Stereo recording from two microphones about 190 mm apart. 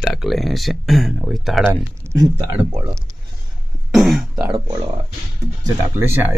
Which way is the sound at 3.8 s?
Centre (ahead or behind).